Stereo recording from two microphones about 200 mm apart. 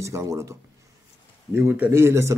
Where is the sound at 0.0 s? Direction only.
15° right (ahead or behind).